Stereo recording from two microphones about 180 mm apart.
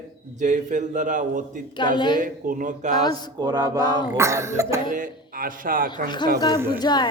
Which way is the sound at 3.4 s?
20° right (ahead or behind).